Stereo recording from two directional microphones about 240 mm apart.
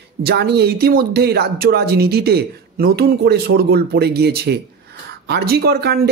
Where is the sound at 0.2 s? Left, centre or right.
Right.